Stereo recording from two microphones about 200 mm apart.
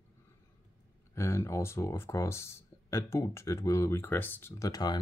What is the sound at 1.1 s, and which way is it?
Speech, 15° left (ahead or behind).